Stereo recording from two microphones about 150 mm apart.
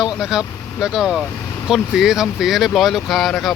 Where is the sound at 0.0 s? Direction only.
5° right (ahead or behind).